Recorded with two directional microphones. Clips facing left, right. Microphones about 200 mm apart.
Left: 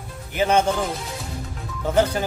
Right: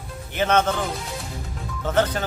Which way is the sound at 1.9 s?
10° left (ahead or behind).